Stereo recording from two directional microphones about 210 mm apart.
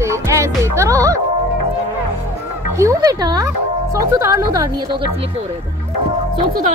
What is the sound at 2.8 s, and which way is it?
Speech, 15° right (ahead or behind).